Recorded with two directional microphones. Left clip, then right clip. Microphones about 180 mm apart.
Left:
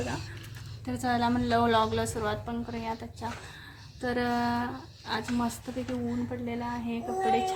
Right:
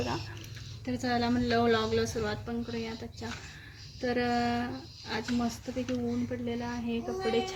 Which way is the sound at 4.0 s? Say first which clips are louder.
Even; centre (ahead or behind).